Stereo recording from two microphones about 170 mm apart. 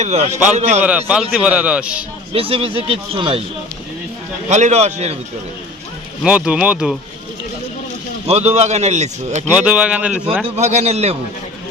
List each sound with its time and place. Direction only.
0.0 s speech: 40° right (ahead or behind)
0.8 s a man's voice: 10° right (ahead or behind)
2.3 s speech: 35° right (ahead or behind)
4.4 s speech: 40° right (ahead or behind)
6.2 s a man's voice: 5° right (ahead or behind)
8.3 s speech: 40° right (ahead or behind)
9.6 s speech: 5° right (ahead or behind)
10.4 s speech: 40° right (ahead or behind)